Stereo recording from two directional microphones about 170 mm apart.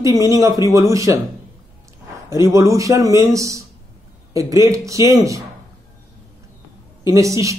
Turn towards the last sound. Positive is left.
turn(degrees=-20)  # may be behind; listen again after turning